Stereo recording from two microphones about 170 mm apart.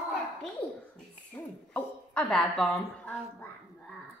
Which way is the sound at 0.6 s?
5° left (ahead or behind).